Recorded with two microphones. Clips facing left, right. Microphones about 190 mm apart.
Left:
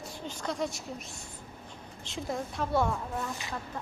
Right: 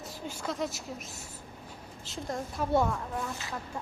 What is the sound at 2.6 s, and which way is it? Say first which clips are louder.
Speech: right 4 dB; 10° right (ahead or behind).